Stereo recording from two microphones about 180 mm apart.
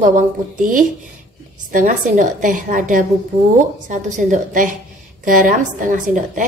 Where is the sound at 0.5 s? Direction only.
45° right (ahead or behind).